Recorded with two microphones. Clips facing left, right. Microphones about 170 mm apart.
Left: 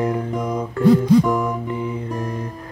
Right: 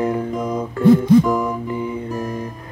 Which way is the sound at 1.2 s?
5° right (ahead or behind).